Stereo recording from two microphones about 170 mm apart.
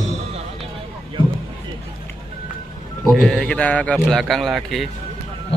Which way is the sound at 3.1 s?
Centre (ahead or behind).